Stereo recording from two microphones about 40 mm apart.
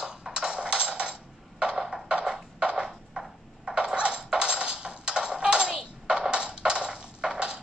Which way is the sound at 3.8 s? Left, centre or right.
Right.